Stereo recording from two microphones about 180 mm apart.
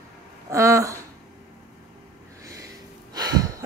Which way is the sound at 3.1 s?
20° right (ahead or behind).